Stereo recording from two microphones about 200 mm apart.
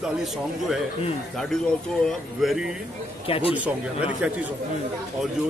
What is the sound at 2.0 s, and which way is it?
Speech, centre (ahead or behind).